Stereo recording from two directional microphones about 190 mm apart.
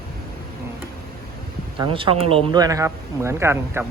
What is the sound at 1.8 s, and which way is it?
Speech, 25° right (ahead or behind).